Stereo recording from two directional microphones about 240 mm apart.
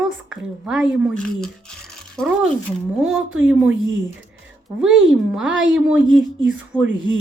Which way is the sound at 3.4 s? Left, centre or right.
Centre.